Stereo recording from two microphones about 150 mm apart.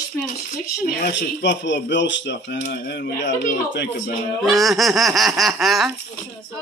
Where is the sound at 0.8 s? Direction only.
90° left.